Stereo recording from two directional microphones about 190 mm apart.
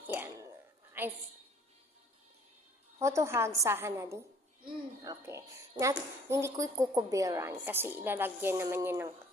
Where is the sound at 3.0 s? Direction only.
15° right (ahead or behind).